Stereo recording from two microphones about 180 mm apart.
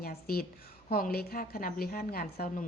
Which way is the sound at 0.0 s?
60° left (ahead or behind).